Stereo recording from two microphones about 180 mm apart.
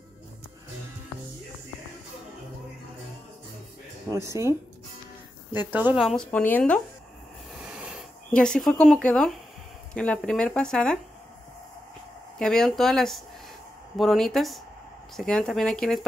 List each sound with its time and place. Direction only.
4.1 s speech: 15° right (ahead or behind); by 6.8 s 10° left (ahead or behind)
7.6 s snort: 5° right (ahead or behind)
8.3 s speech: 5° left (ahead or behind)
12.4 s speech: 5° left (ahead or behind)